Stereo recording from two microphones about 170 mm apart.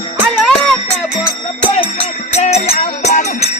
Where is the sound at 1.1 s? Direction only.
35° left (ahead or behind).